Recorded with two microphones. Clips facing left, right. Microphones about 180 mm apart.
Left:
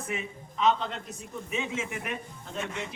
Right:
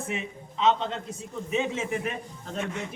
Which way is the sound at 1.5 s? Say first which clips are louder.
Right 6 dB; 35° right (ahead or behind).